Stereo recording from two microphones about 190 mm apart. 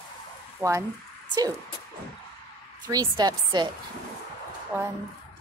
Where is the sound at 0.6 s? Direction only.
15° right (ahead or behind).